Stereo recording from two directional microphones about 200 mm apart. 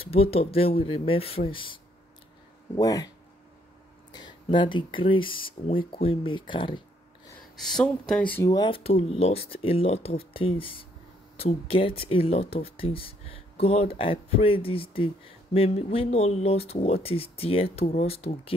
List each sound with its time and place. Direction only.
0.0 s speech: 30° left (ahead or behind)
4.1 s speech: 20° left (ahead or behind)
7.5 s speech: centre (ahead or behind); by 18.5 s 30° left (ahead or behind)